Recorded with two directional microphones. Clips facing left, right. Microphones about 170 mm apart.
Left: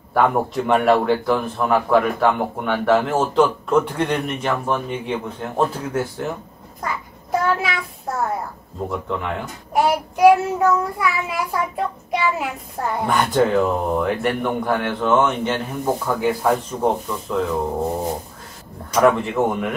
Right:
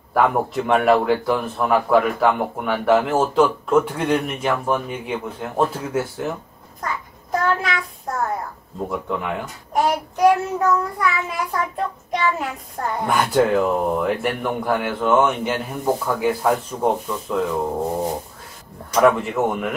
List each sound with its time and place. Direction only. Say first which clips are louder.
0.1 s a man's voice: even; centre (ahead or behind)
6.8 s child singing: left 1 dB; 5° left (ahead or behind)
8.1 s a sound: left 1 dB; 5° left (ahead or behind)
9.1 s a man's voice: right 1 dB; 5° right (ahead or behind)
9.8 s a child's voice: left 2 dB; 10° left (ahead or behind)
13.1 s a man's voice: even; 5° right (ahead or behind)
18.9 s a man's voice: even; centre (ahead or behind)